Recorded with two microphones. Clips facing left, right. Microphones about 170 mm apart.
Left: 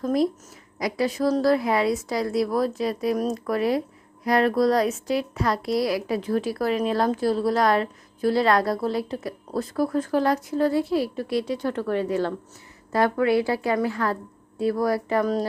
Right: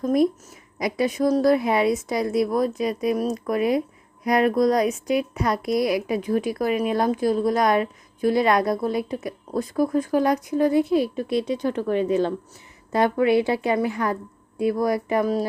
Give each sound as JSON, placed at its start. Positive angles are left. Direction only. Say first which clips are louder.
{"t": 0.8, "sound": "a woman's voice", "louder": "right 2 dB", "side_deg": -20}